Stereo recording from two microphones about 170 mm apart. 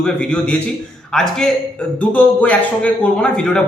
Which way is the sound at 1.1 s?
5° left (ahead or behind).